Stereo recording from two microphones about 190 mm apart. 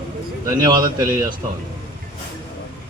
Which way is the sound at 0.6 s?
20° right (ahead or behind).